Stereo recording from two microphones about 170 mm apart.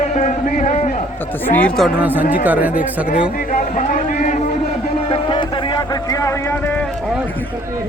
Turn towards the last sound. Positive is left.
turn(degrees=15)  # may be behind; listen again after turning